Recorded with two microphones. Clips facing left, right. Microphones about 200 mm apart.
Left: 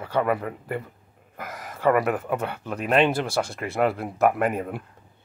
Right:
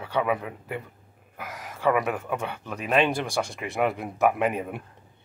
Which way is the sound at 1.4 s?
10° right (ahead or behind).